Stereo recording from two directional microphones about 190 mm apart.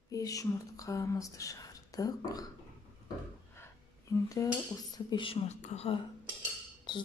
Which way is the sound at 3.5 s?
15° left (ahead or behind).